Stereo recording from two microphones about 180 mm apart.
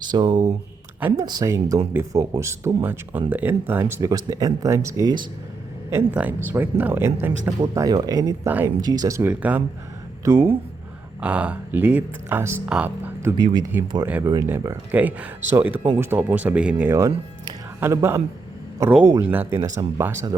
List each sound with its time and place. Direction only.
0.0 s speech: 25° right (ahead or behind)
0.9 s speech: 10° right (ahead or behind)
1.2 s speech: 20° right (ahead or behind)
8.4 s speech: 10° right (ahead or behind)
8.8 s speech: 20° right (ahead or behind)
13.3 s a man's voice: 25° right (ahead or behind)